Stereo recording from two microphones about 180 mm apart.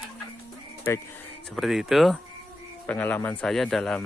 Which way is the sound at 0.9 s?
15° left (ahead or behind).